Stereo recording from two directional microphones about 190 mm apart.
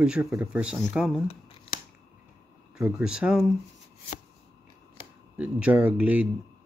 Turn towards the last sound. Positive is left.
turn(degrees=-5)  # may be behind; listen again after turning